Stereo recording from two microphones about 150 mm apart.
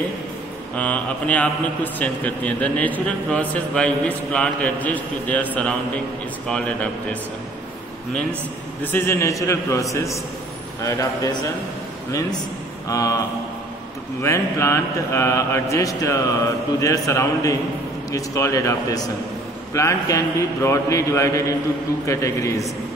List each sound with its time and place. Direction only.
0.7 s a man's voice: 10° left (ahead or behind)
8.8 s speech: 15° left (ahead or behind)
12.8 s speech: 20° left (ahead or behind)
14.2 s speech: 20° left (ahead or behind)